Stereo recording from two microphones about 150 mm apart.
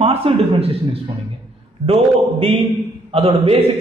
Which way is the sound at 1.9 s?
40° right (ahead or behind).